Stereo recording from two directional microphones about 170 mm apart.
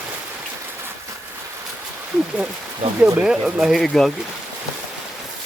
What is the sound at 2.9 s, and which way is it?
Speech, 5° right (ahead or behind).